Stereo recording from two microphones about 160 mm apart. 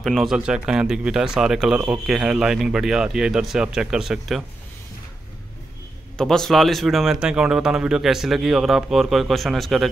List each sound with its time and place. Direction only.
0.0 s speech: centre (ahead or behind)
6.1 s speech: 5° left (ahead or behind)